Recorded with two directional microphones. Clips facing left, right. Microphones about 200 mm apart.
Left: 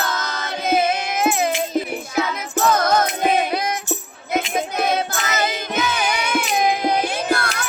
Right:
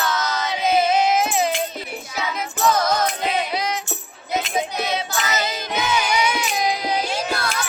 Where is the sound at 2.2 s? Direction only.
55° left (ahead or behind).